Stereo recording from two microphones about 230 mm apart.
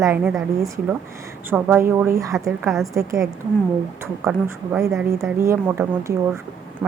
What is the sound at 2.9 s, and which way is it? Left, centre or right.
A woman's voice, centre.